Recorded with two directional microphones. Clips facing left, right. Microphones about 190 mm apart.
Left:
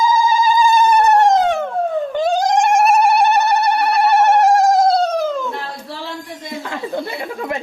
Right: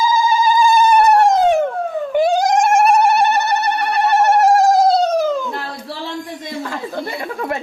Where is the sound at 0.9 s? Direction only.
10° right (ahead or behind).